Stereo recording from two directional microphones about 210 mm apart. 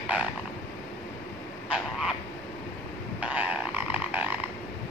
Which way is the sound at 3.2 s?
5° right (ahead or behind).